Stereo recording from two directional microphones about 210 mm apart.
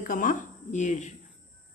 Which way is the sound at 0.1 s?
40° left (ahead or behind).